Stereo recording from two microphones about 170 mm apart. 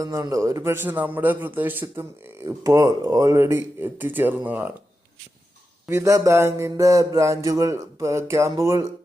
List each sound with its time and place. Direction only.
0.0 s a man's voice: 20° right (ahead or behind)
5.9 s a man's voice: 20° right (ahead or behind)